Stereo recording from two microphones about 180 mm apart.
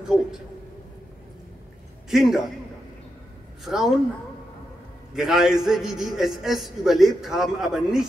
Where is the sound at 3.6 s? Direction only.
Centre (ahead or behind).